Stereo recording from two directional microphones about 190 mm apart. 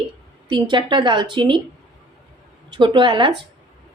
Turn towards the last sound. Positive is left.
turn(degrees=-25)  # may be behind; listen again after turning